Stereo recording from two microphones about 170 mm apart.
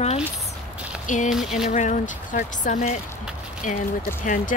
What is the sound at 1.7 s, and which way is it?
Speech, 45° left (ahead or behind).